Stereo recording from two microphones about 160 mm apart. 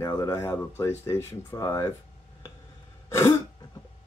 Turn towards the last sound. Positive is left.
turn(degrees=15)  # may be behind; listen again after turning